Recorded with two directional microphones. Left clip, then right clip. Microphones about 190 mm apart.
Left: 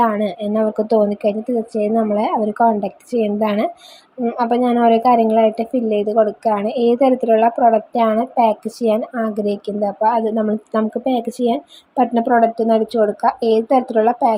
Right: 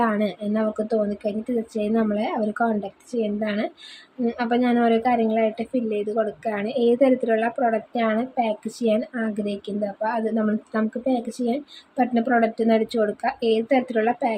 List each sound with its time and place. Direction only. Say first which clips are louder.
0.0 s a woman's voice: left 6 dB; 15° left (ahead or behind)
12.1 s a woman's voice: left 6 dB; 10° left (ahead or behind)